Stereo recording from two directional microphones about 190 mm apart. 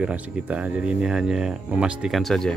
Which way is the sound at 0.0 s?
5° right (ahead or behind).